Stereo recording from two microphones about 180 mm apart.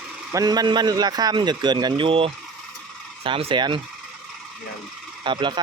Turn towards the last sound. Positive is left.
turn(degrees=-25)  # may be behind; listen again after turning